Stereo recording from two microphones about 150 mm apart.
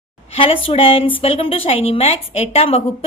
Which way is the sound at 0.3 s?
35° left (ahead or behind).